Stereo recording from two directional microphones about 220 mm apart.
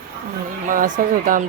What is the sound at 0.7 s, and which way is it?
Speech, 40° right (ahead or behind).